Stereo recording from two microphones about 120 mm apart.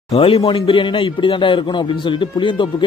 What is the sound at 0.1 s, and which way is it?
A man's voice, 55° left (ahead or behind).